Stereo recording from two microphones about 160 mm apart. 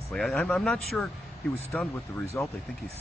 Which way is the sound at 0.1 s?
Centre (ahead or behind).